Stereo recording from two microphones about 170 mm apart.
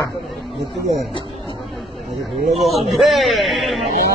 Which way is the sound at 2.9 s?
Centre (ahead or behind).